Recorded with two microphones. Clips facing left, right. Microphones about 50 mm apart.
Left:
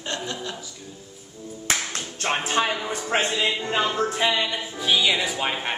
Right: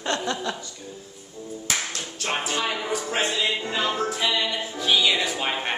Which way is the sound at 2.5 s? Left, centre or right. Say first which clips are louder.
Left 5 dB; left.